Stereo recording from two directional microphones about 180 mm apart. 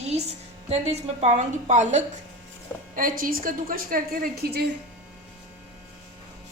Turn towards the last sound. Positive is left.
turn(degrees=-60)  # may be behind; listen again after turning